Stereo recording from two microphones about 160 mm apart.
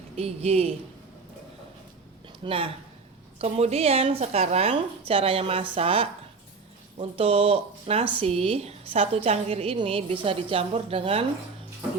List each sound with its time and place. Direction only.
0.2 s speech: 40° right (ahead or behind)
2.4 s speech: 35° right (ahead or behind)